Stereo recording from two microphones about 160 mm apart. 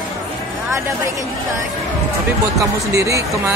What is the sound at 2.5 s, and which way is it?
Speech, 20° right (ahead or behind).